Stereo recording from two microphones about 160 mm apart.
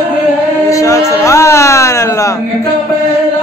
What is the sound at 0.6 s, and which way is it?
Music, 20° left (ahead or behind).